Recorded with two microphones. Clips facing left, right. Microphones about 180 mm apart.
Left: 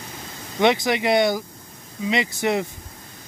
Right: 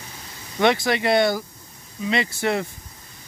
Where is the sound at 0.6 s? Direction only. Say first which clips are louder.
Left 1 dB; 20° left (ahead or behind).